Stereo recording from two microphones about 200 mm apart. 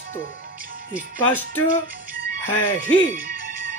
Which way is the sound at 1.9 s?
45° right (ahead or behind).